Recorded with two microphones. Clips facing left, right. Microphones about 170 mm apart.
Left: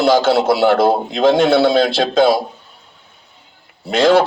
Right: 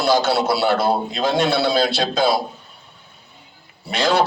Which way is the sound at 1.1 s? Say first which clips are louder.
Left 7 dB; 55° left (ahead or behind).